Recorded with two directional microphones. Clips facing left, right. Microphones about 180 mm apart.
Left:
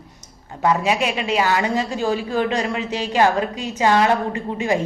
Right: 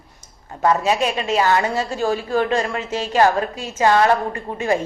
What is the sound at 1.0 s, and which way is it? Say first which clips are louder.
Speech: right 1 dB; 40° right (ahead or behind).